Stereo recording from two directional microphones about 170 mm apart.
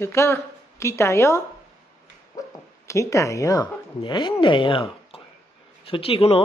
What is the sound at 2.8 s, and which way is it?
A woman's voice, 15° left (ahead or behind).